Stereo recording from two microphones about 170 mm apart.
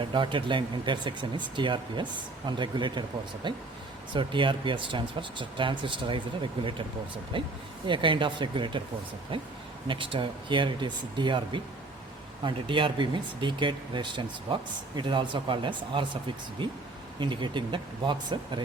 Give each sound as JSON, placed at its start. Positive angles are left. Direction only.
{"t": 0.0, "sound": "speech", "side_deg": -30}